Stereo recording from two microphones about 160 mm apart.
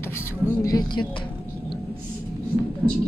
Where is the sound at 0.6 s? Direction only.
25° left (ahead or behind).